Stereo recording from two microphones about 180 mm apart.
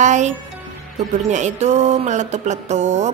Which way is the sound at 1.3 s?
40° right (ahead or behind).